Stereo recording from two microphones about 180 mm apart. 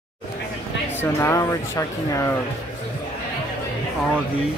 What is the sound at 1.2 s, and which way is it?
Speech, 15° left (ahead or behind).